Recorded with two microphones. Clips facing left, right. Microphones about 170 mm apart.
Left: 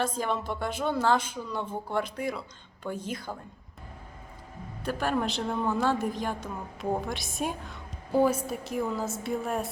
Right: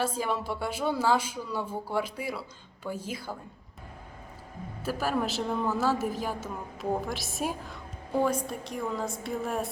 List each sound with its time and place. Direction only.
0.0 s speech: 10° right (ahead or behind)
4.8 s a woman's voice: 5° right (ahead or behind)